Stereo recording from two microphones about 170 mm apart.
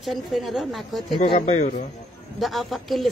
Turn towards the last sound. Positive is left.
turn(degrees=0)  # may be behind; listen again after turning